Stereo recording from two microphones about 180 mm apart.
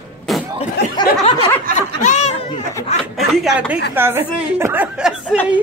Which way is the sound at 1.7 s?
40° left (ahead or behind).